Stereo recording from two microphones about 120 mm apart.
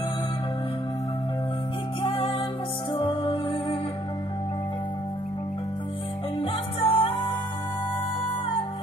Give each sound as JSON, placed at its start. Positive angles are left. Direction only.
{"t": 2.0, "sound": "music", "side_deg": 50}
{"t": 6.4, "sound": "music", "side_deg": 55}